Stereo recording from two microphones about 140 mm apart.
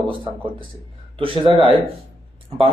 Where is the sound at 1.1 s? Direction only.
40° right (ahead or behind).